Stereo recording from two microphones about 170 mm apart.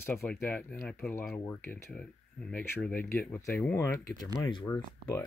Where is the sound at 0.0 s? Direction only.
15° left (ahead or behind).